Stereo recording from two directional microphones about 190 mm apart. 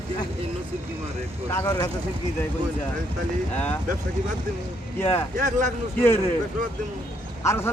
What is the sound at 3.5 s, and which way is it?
Speech, 10° left (ahead or behind).